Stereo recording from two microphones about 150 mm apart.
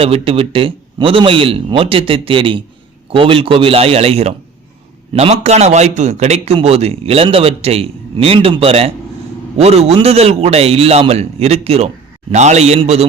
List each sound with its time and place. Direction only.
0.0 s a man's voice: 40° right (ahead or behind)